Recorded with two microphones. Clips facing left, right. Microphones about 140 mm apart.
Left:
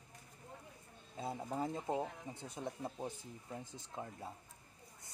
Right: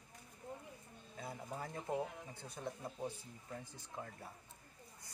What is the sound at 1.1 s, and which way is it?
Speech, 25° left (ahead or behind).